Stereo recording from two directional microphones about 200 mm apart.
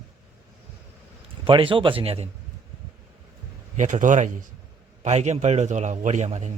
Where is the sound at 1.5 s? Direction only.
25° right (ahead or behind).